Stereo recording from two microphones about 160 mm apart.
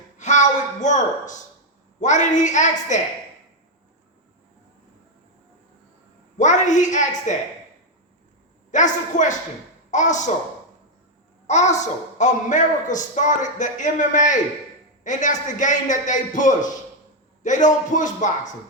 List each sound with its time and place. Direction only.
0.2 s a woman's voice: 50° left (ahead or behind)
6.3 s a child's voice: 50° left (ahead or behind)
8.7 s a child's voice: 50° left (ahead or behind)
11.4 s a child's voice: 45° left (ahead or behind)